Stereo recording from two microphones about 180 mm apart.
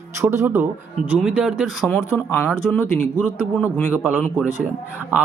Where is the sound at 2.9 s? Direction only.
10° right (ahead or behind).